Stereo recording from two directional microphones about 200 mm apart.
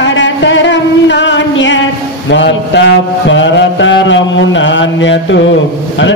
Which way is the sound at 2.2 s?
60° left (ahead or behind).